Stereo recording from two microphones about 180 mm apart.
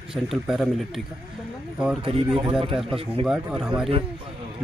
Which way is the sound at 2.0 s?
30° right (ahead or behind).